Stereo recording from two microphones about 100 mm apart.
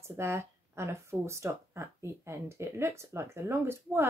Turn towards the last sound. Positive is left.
turn(degrees=-25)  # may be behind; listen again after turning